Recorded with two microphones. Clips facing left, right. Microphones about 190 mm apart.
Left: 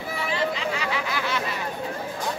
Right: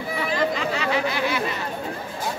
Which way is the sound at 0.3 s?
40° right (ahead or behind).